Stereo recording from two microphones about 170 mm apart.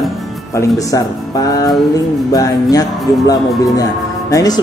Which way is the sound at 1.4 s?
20° left (ahead or behind).